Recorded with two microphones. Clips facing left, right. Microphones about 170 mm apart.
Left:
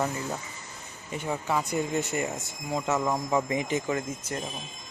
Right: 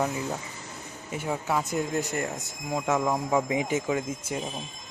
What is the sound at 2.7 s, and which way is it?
Speech, 10° right (ahead or behind).